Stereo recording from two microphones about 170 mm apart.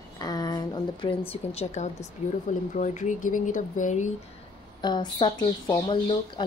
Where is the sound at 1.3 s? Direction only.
40° left (ahead or behind).